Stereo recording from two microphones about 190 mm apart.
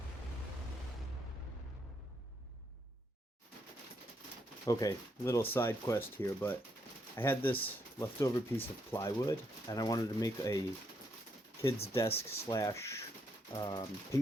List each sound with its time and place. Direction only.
4.6 s speech: 15° left (ahead or behind)
12.0 s speech: 30° left (ahead or behind)
12.5 s speech: 15° left (ahead or behind)